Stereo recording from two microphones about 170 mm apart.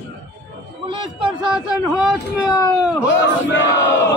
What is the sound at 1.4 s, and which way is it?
Speech, 5° right (ahead or behind).